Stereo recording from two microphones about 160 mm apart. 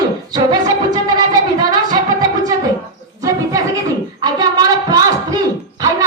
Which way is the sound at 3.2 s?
20° right (ahead or behind).